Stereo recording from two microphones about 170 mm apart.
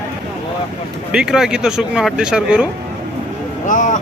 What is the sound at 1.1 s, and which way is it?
Speech, 5° right (ahead or behind).